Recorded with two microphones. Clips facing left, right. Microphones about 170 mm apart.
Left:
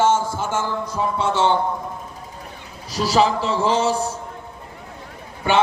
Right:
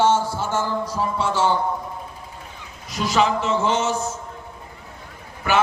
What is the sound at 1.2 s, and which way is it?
Speech, 25° left (ahead or behind).